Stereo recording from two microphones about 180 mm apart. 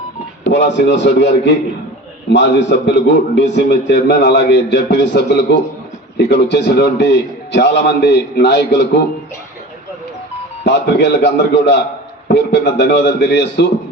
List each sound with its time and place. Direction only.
0.4 s a man's voice: 75° left (ahead or behind)
10.6 s a man's voice: 70° left (ahead or behind)